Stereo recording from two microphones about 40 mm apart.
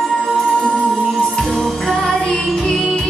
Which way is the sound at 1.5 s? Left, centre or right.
Centre.